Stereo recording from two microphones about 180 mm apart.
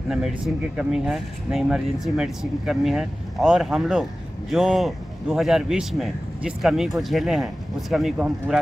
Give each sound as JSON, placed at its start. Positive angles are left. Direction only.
{"t": 0.1, "sound": "speech", "side_deg": 0}